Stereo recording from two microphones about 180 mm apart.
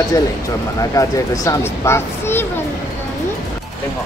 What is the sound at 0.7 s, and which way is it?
A child's voice, 20° left (ahead or behind).